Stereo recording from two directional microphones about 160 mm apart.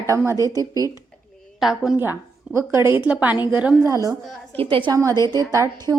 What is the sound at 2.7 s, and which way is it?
A woman's voice, 15° right (ahead or behind).